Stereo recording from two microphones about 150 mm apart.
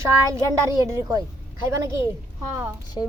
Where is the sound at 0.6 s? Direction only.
20° right (ahead or behind).